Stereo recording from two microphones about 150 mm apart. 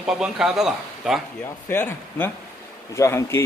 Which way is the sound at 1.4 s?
15° left (ahead or behind).